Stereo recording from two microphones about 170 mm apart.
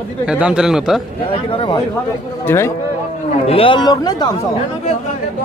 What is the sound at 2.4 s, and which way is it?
Speech, 15° left (ahead or behind).